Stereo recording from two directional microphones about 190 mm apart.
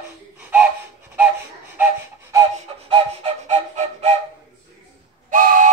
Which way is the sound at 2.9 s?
30° right (ahead or behind).